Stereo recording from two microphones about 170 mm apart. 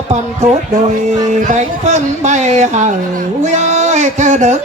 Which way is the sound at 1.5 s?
45° right (ahead or behind).